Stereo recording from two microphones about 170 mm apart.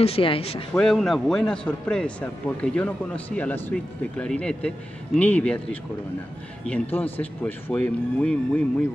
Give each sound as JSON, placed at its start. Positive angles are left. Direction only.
{"t": 0.0, "sound": "speech", "side_deg": 35}
{"t": 0.7, "sound": "a man's voice", "side_deg": 0}